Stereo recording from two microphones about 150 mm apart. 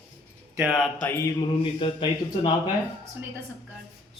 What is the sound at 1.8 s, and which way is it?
Speech, 35° left (ahead or behind).